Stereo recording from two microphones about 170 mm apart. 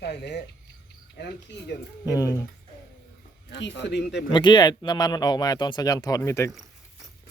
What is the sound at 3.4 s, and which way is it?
Speech, 90° left.